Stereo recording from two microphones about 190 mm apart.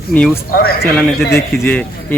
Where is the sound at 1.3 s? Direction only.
10° left (ahead or behind).